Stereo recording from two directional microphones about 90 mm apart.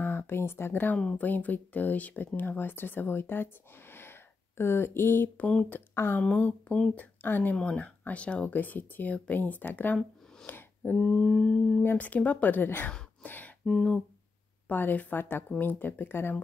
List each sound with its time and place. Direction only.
0.0 s speech: 25° left (ahead or behind)
0.9 s speech: 15° left (ahead or behind)
3.9 s a sound: 25° left (ahead or behind)
5.5 s speech: 15° left (ahead or behind)
5.9 s speech: 25° left (ahead or behind)
6.2 s speech: 15° left (ahead or behind)
10.4 s a sound: 20° left (ahead or behind)
11.0 s speech: 10° left (ahead or behind)
11.8 s speech: 20° left (ahead or behind)
13.2 s a sound: 20° left (ahead or behind)
13.7 s speech: 5° left (ahead or behind)
14.7 s speech: 20° left (ahead or behind)